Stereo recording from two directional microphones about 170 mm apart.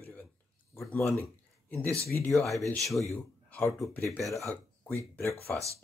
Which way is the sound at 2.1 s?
15° left (ahead or behind).